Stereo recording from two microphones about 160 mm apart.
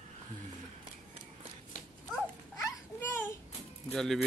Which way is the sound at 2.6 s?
15° left (ahead or behind).